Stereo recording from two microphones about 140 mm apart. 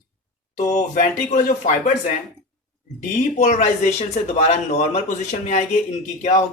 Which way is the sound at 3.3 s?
60° left (ahead or behind).